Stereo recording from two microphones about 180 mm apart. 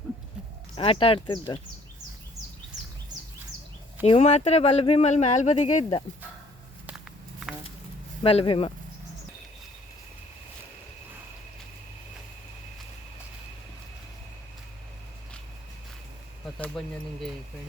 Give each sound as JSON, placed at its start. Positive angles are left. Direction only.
{"t": 0.8, "sound": "speech", "side_deg": 30}
{"t": 4.0, "sound": "speech", "side_deg": 35}
{"t": 6.8, "sound": "walk", "side_deg": -5}
{"t": 8.2, "sound": "speech", "side_deg": 30}
{"t": 16.6, "sound": "speech", "side_deg": 5}